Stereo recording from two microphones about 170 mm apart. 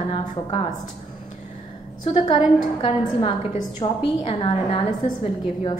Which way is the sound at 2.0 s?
25° left (ahead or behind).